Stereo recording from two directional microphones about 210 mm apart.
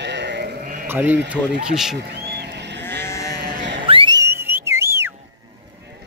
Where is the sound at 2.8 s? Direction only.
10° left (ahead or behind).